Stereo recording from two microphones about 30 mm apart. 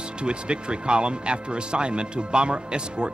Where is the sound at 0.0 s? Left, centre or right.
Right.